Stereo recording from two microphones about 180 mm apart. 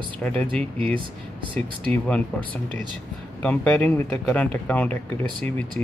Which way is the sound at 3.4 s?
5° left (ahead or behind).